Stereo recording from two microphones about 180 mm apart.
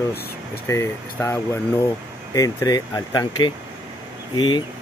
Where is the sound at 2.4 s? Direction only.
20° left (ahead or behind).